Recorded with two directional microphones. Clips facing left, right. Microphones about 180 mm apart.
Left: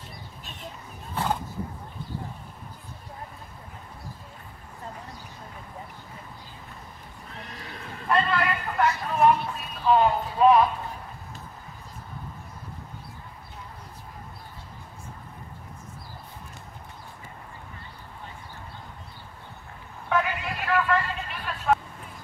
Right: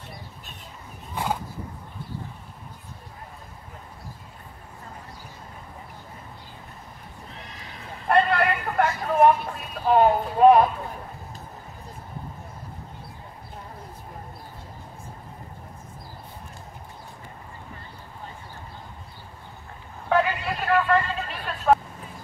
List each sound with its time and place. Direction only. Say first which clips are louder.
1.1 s roaring cats: even; 10° right (ahead or behind)
8.1 s vehicle: right 4 dB; 60° right (ahead or behind)
20.1 s vehicle: right 4 dB; 35° right (ahead or behind)